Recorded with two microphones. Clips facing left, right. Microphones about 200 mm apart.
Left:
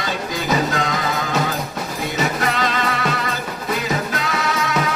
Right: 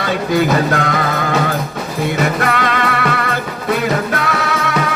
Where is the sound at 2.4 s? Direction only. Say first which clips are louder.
Right 4 dB; 60° right (ahead or behind).